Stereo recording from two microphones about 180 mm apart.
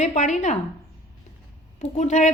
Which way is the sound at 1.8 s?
40° left (ahead or behind).